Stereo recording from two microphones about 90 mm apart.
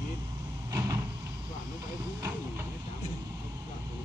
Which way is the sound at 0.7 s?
40° right (ahead or behind).